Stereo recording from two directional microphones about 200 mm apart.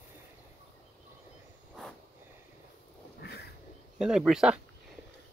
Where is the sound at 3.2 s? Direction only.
55° left (ahead or behind).